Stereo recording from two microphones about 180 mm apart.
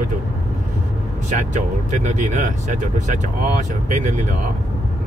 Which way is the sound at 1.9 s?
40° right (ahead or behind).